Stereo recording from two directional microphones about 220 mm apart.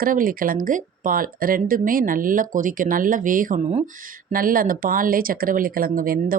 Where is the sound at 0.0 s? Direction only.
40° right (ahead or behind).